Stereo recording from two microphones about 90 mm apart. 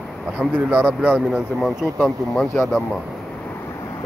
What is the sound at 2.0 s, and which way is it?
Speech, 15° left (ahead or behind).